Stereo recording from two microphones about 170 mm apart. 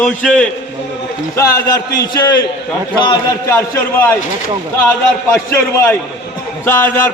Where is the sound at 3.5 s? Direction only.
10° left (ahead or behind).